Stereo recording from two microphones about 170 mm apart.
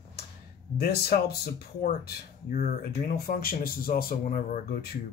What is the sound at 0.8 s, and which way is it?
Speech, 70° left (ahead or behind).